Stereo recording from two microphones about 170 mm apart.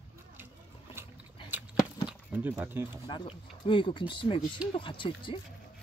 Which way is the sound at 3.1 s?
30° left (ahead or behind).